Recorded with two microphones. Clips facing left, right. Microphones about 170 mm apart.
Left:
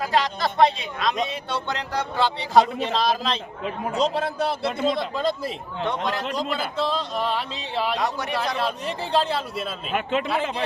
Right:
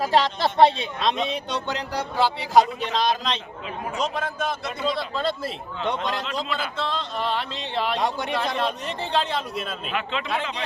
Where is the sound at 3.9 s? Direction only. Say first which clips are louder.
Left 4 dB; 35° left (ahead or behind).